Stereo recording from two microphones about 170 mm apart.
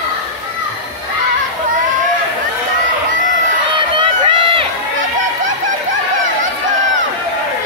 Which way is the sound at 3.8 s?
30° right (ahead or behind).